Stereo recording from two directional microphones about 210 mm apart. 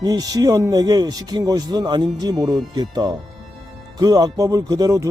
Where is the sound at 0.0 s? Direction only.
20° right (ahead or behind).